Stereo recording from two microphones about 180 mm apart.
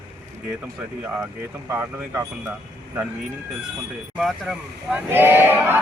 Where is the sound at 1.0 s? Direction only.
10° right (ahead or behind).